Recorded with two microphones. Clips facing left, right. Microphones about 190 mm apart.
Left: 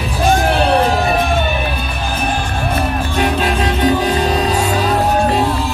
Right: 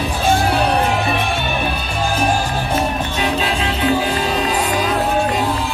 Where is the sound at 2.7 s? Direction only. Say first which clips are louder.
Left 2 dB; 50° left (ahead or behind).